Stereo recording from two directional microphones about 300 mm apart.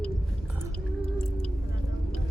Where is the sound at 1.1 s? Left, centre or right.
Centre.